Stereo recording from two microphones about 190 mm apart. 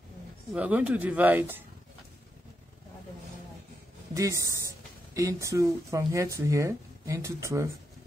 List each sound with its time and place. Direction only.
0.5 s speech: 10° right (ahead or behind)
4.1 s speech: 15° right (ahead or behind)